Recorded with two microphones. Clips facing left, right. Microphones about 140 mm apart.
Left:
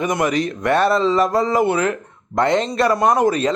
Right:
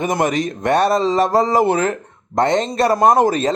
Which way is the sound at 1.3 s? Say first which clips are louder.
Right 2 dB; 30° right (ahead or behind).